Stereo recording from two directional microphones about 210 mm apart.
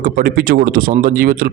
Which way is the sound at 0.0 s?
45° right (ahead or behind).